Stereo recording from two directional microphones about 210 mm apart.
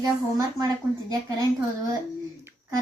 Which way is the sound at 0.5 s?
20° right (ahead or behind).